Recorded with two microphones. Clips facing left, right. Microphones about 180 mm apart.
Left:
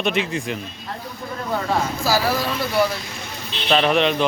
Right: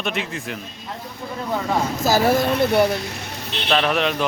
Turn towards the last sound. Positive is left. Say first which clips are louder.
# left 3 dB
turn(degrees=-5)  # may be behind; listen again after turning